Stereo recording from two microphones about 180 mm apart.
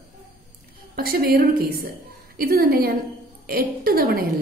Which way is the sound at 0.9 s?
55° right (ahead or behind).